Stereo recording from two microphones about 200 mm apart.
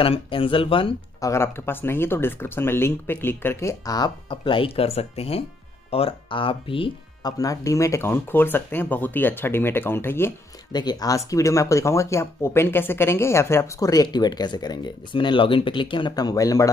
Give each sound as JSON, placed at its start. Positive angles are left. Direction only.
{"t": 0.0, "sound": "speech", "side_deg": 25}
{"t": 1.3, "sound": "speech", "side_deg": 10}